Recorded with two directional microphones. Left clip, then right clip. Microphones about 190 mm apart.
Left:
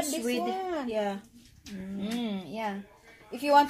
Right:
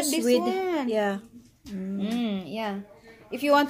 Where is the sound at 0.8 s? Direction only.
60° right (ahead or behind).